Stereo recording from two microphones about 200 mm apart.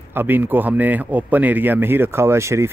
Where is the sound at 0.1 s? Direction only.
10° right (ahead or behind).